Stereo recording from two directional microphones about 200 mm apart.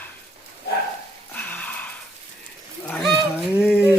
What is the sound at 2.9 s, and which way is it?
Fowl, centre (ahead or behind).